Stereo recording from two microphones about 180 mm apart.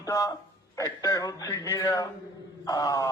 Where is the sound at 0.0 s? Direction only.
20° left (ahead or behind).